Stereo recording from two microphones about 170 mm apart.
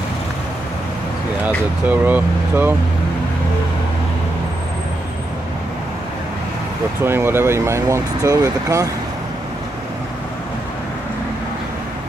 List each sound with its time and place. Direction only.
1.9 s speech: 10° right (ahead or behind)
7.0 s speech: 15° right (ahead or behind)